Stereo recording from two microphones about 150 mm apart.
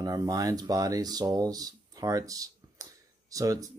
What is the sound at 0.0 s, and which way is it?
Speech, 25° right (ahead or behind).